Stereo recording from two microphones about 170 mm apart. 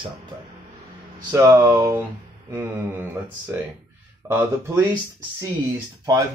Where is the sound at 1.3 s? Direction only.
15° right (ahead or behind).